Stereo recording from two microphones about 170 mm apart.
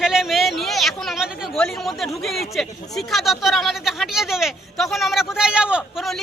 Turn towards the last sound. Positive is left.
turn(degrees=0)  # may be behind; listen again after turning